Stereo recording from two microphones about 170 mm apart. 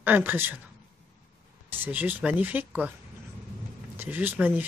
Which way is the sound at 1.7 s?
10° right (ahead or behind).